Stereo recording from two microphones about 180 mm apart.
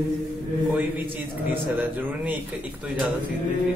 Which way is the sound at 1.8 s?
10° right (ahead or behind).